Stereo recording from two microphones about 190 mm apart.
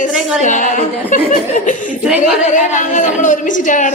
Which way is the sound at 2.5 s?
40° left (ahead or behind).